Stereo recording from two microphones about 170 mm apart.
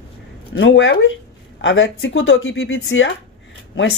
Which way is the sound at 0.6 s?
90° left.